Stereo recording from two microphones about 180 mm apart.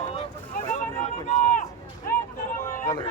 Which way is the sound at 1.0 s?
40° left (ahead or behind).